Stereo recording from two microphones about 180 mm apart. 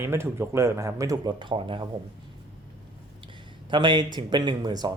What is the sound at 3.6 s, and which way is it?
Speech, 25° right (ahead or behind).